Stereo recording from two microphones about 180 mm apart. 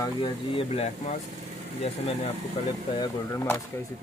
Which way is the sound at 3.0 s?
15° left (ahead or behind).